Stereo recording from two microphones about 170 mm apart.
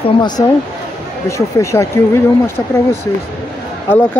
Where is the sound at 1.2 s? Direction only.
15° left (ahead or behind).